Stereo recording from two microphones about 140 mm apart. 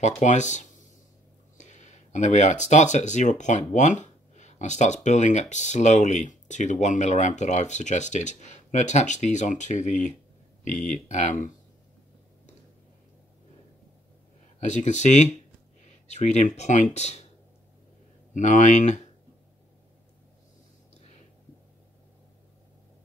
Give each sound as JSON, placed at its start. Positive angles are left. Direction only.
{"t": 0.0, "sound": "speech", "side_deg": 60}
{"t": 14.6, "sound": "speech", "side_deg": 60}
{"t": 18.3, "sound": "speech", "side_deg": 60}